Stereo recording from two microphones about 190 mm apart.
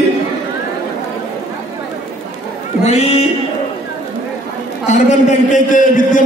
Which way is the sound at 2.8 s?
35° left (ahead or behind).